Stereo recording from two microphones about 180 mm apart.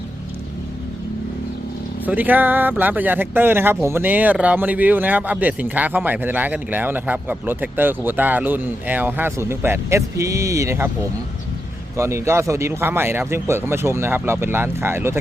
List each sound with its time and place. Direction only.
2.0 s speech: 10° right (ahead or behind)
11.9 s speech: 15° right (ahead or behind)